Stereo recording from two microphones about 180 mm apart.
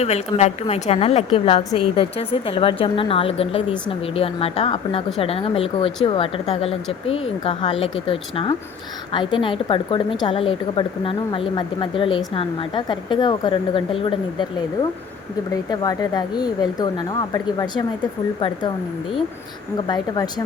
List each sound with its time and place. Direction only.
0.0 s a woman's voice: 40° left (ahead or behind)
15.7 s a woman's voice: 20° left (ahead or behind)
19.9 s a woman's voice: 20° left (ahead or behind)